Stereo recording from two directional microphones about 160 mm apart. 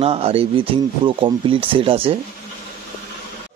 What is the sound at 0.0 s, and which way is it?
Speech, 40° right (ahead or behind).